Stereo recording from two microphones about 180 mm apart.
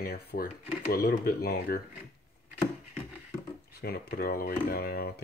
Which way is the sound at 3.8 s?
60° left (ahead or behind).